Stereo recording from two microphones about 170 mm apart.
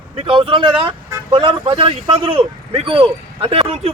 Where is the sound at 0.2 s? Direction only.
30° right (ahead or behind).